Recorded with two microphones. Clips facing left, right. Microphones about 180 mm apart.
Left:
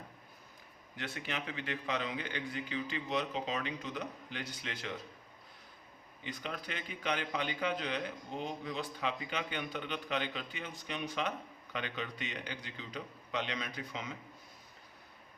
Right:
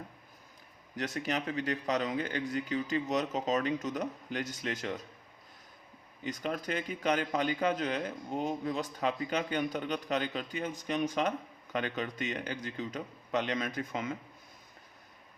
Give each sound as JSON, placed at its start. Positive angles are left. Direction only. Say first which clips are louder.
{"t": 0.9, "sound": "a man's voice", "louder": "right 7 dB", "side_deg": -40}
{"t": 6.2, "sound": "a man's voice", "louder": "right 7 dB", "side_deg": -45}